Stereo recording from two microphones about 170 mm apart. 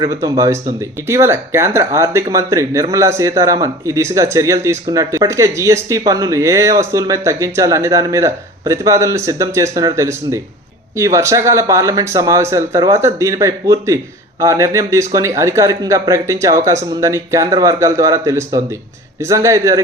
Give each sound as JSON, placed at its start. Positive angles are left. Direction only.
{"t": 0.0, "sound": "speech", "side_deg": -20}